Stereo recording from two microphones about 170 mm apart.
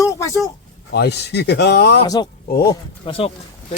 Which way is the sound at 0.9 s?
75° left (ahead or behind).